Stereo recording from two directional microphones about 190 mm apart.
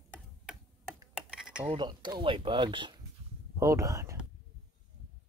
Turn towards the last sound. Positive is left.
turn(degrees=-15)  # may be behind; listen again after turning